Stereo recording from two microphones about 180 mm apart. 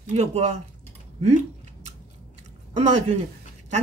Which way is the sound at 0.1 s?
40° right (ahead or behind).